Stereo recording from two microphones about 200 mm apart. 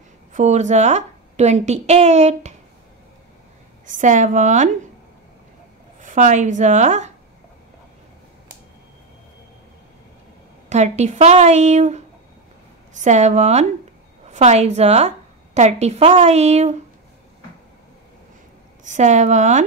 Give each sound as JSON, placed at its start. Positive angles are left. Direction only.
{"t": 0.3, "sound": "a woman's voice", "side_deg": -35}
{"t": 3.8, "sound": "a woman's voice", "side_deg": -40}
{"t": 5.9, "sound": "a woman's voice", "side_deg": -40}
{"t": 10.7, "sound": "a woman's voice", "side_deg": -35}
{"t": 18.9, "sound": "a woman's voice", "side_deg": -35}